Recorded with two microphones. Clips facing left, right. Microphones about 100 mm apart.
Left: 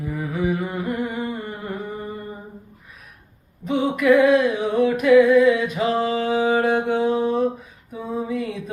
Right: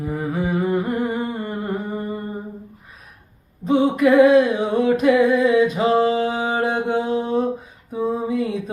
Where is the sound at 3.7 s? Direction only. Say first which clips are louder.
Right 2 dB; 30° right (ahead or behind).